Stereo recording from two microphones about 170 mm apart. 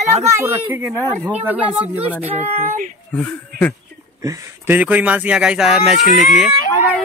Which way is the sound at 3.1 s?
10° left (ahead or behind).